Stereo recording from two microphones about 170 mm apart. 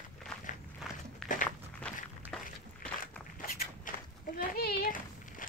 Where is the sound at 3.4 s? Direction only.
60° left (ahead or behind).